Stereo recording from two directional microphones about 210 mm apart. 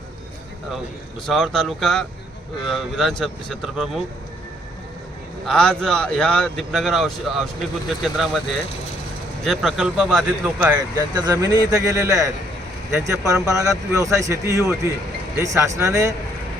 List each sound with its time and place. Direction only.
1.3 s speech: centre (ahead or behind)
5.5 s speech: 5° left (ahead or behind)
9.4 s speech: centre (ahead or behind)
10.6 s speech: 20° right (ahead or behind)